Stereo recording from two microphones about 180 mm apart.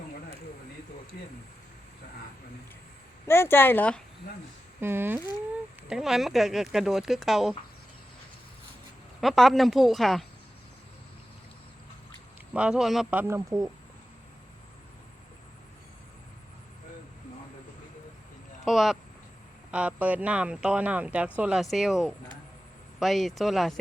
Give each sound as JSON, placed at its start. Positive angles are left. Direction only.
{"t": 1.1, "sound": "speech", "side_deg": 55}
{"t": 3.2, "sound": "speech", "side_deg": 15}
{"t": 4.8, "sound": "speech", "side_deg": -10}
{"t": 9.2, "sound": "speech", "side_deg": 0}
{"t": 12.5, "sound": "speech", "side_deg": -5}
{"t": 18.6, "sound": "speech", "side_deg": 0}